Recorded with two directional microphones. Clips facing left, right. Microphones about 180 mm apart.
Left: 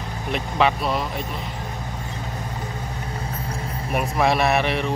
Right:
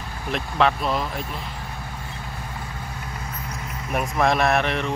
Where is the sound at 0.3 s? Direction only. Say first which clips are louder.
Even; centre (ahead or behind).